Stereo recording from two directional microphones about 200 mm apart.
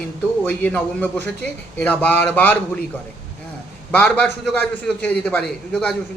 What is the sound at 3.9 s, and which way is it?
A man's voice, 5° left (ahead or behind).